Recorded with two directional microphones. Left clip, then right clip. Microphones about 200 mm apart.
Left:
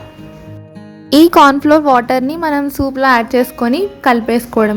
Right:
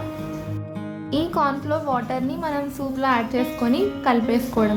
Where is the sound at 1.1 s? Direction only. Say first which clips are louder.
Left 15 dB; 50° left (ahead or behind).